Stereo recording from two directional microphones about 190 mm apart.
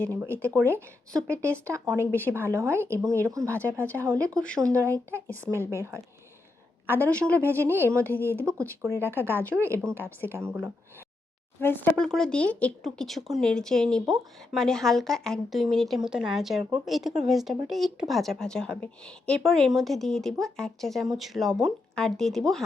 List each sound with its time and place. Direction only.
0.4 s speech: 15° right (ahead or behind)
1.1 s speech: 5° left (ahead or behind)
1.5 s speech: 15° right (ahead or behind)
2.0 s speech: 10° left (ahead or behind)
2.3 s speech: 15° right (ahead or behind)
4.4 s speech: 5° left (ahead or behind)
4.6 s speech: 15° right (ahead or behind)
6.8 s speech: 10° left (ahead or behind)
7.7 s speech: 10° right (ahead or behind)
7.9 s speech: 10° left (ahead or behind)
10.3 s speech: 10° right (ahead or behind)
11.6 s speech: 10° left (ahead or behind)